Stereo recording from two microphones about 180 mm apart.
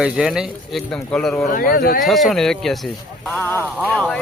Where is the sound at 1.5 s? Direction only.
55° left (ahead or behind).